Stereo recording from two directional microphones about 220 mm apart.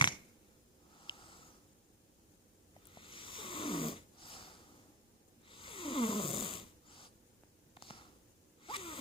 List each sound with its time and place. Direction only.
0.9 s snort: 20° left (ahead or behind)
2.9 s snoring: 20° left (ahead or behind)
7.8 s a sound: 25° left (ahead or behind)
8.6 s zipper: 25° left (ahead or behind)